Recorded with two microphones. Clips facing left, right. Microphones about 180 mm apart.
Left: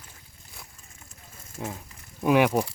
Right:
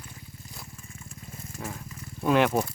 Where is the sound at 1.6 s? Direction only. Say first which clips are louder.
Left 3 dB; 15° left (ahead or behind).